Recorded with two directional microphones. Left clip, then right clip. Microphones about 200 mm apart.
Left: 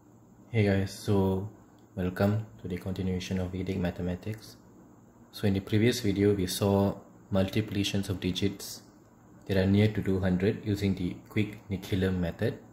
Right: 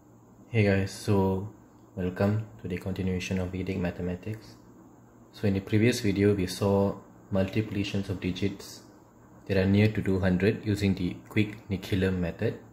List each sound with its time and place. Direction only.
0.5 s speech: 5° left (ahead or behind)
2.0 s speech: 15° left (ahead or behind)
2.7 s speech: centre (ahead or behind)
6.6 s speech: 15° left (ahead or behind); by 12.1 s centre (ahead or behind)
12.2 s speech: 15° left (ahead or behind)